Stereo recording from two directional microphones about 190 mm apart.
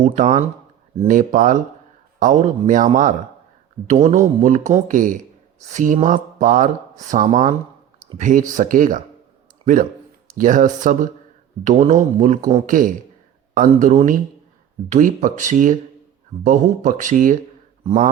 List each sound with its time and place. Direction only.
0.0 s speech: 40° right (ahead or behind)
10.2 s speech: 45° right (ahead or behind)